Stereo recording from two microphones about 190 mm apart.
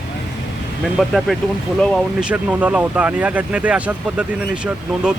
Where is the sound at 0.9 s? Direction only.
Centre (ahead or behind).